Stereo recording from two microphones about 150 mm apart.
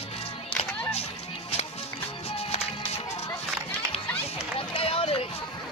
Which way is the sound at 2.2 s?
40° left (ahead or behind).